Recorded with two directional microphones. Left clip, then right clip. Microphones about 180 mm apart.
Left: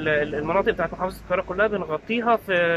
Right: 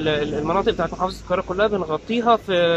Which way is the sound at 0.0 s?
15° right (ahead or behind).